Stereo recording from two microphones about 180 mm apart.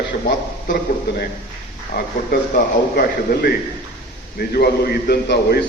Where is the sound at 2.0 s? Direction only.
55° left (ahead or behind).